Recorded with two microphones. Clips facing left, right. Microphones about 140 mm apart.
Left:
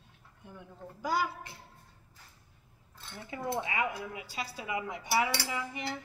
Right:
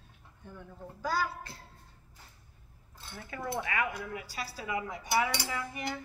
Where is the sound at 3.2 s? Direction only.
20° left (ahead or behind).